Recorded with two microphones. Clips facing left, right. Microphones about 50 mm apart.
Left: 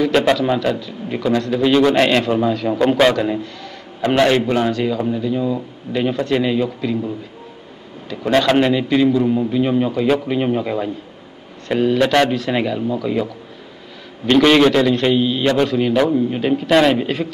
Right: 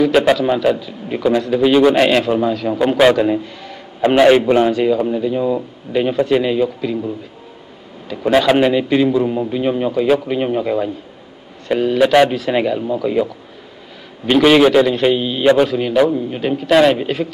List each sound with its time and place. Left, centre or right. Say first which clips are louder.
0.0 s a man's voice: right 2 dB; centre
8.1 s a man's voice: right 2 dB; centre